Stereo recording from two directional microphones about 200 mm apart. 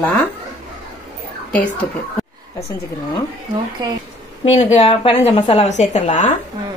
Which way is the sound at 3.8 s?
20° right (ahead or behind).